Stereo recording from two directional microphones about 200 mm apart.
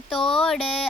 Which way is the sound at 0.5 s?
30° left (ahead or behind).